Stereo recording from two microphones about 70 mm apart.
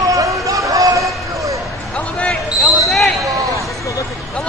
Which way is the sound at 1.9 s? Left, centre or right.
Centre.